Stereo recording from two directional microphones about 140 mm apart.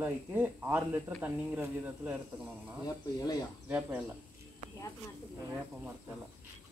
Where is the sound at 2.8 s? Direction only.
25° left (ahead or behind).